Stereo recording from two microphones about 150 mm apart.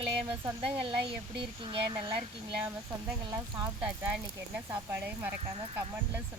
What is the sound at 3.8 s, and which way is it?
Speech, 10° right (ahead or behind).